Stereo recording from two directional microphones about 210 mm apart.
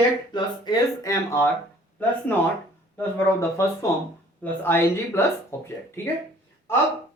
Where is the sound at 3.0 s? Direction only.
15° left (ahead or behind).